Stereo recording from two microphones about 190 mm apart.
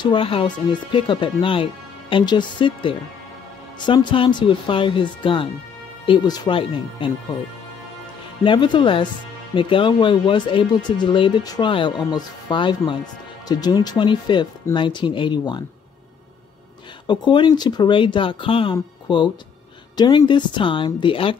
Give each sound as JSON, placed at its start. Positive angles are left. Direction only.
{"t": 0.0, "sound": "speech", "side_deg": 25}
{"t": 8.5, "sound": "speech", "side_deg": 25}
{"t": 17.1, "sound": "speech", "side_deg": 25}